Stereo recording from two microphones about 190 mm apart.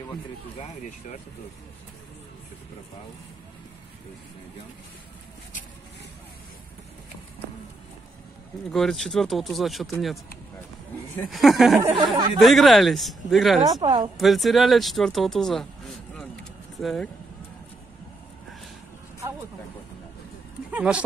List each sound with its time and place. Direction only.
0.6 s speech: 35° left (ahead or behind)
8.7 s speech: centre (ahead or behind)
11.2 s speech: centre (ahead or behind)
11.9 s speech: 25° right (ahead or behind)
12.4 s speech: centre (ahead or behind)
13.7 s speech: 20° right (ahead or behind)
14.1 s speech: centre (ahead or behind)
20.7 s speech: 5° right (ahead or behind)